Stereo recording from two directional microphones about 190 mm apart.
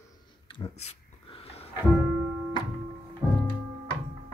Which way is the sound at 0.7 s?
35° left (ahead or behind).